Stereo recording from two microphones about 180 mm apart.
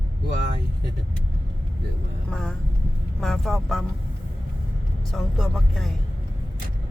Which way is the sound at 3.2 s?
Centre (ahead or behind).